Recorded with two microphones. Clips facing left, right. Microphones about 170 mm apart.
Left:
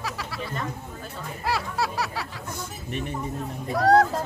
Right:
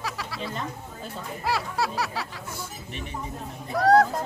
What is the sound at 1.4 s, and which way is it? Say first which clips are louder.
Honk: even; centre (ahead or behind).